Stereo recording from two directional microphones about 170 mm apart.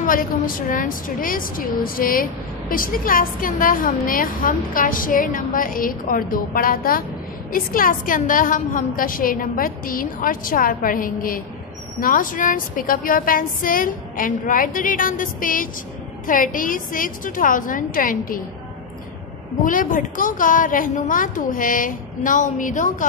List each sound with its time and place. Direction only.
0.0 s a woman's voice: 55° left (ahead or behind)
19.6 s a woman's voice: 50° left (ahead or behind)